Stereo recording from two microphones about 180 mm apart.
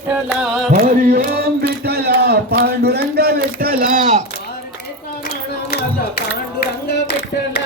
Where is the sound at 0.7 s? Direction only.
55° right (ahead or behind).